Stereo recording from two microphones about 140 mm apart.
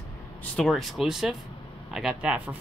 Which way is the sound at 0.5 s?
Centre (ahead or behind).